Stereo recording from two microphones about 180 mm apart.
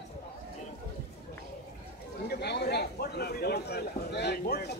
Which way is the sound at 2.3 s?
65° left (ahead or behind).